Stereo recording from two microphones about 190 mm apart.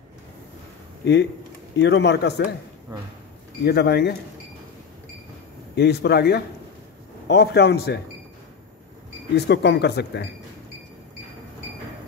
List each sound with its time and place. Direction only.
1.8 s speech: 65° left (ahead or behind)
3.6 s speech: 60° left (ahead or behind)
5.8 s speech: 60° left (ahead or behind)
9.3 s speech: 65° left (ahead or behind)